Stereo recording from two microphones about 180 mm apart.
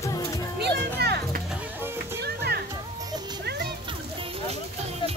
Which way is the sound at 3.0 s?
20° right (ahead or behind).